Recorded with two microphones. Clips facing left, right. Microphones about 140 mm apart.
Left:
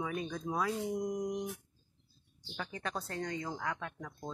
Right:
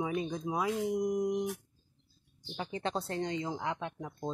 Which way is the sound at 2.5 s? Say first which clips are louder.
Right 5 dB; 25° right (ahead or behind).